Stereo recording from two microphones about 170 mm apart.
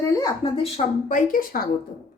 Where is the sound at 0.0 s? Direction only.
20° left (ahead or behind).